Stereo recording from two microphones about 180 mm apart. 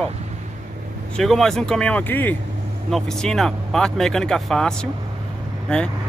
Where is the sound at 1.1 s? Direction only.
Centre (ahead or behind).